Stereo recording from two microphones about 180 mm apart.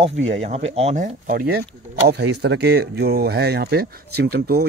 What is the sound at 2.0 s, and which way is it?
Speech, 70° right (ahead or behind).